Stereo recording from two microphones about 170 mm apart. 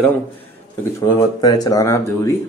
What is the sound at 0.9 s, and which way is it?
Speech, 20° left (ahead or behind).